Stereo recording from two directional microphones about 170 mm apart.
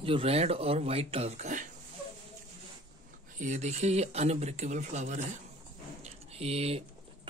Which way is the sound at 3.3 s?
45° right (ahead or behind).